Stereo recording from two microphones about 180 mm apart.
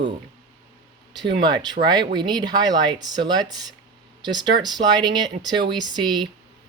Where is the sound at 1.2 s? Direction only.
25° right (ahead or behind).